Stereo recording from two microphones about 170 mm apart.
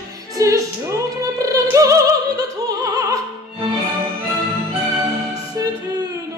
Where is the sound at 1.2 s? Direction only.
20° right (ahead or behind).